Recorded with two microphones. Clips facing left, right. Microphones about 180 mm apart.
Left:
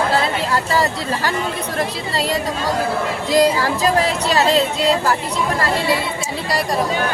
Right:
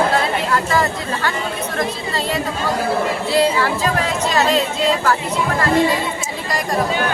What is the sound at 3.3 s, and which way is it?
Speech, 40° left (ahead or behind).